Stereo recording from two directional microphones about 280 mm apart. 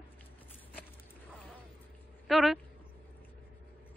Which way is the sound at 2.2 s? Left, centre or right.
Centre.